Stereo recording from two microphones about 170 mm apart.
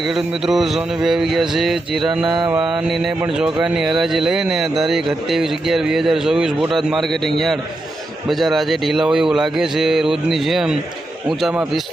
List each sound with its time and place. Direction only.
0.1 s speech: centre (ahead or behind)
2.2 s mantra: 25° right (ahead or behind)
2.5 s speech: 5° right (ahead or behind)